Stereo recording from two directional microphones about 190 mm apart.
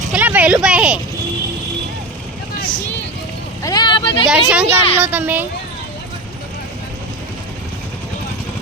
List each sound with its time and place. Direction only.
0.1 s a sound: 10° right (ahead or behind)
3.6 s vehicle: 20° left (ahead or behind)
4.3 s speech: 5° right (ahead or behind)